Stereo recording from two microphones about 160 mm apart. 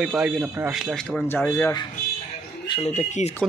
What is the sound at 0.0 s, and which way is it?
Speech, 5° right (ahead or behind).